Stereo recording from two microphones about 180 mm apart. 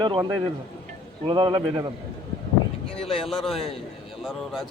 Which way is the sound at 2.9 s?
30° left (ahead or behind).